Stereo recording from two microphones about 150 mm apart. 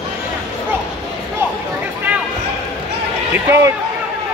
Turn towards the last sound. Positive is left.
turn(degrees=-20)  # may be behind; listen again after turning